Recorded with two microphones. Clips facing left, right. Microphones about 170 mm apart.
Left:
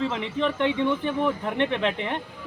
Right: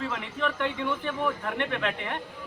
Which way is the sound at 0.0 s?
25° left (ahead or behind).